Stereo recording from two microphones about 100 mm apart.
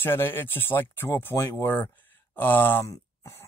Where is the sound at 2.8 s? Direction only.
30° left (ahead or behind).